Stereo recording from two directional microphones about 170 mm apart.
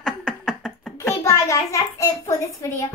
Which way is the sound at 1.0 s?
20° left (ahead or behind).